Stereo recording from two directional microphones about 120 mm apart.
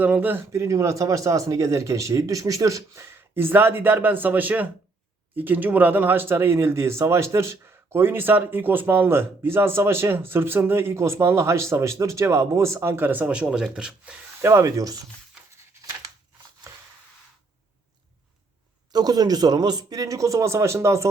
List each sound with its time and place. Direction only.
0.0 s speech: 15° right (ahead or behind)
14.4 s speech: 25° right (ahead or behind)
18.9 s speech: 35° right (ahead or behind)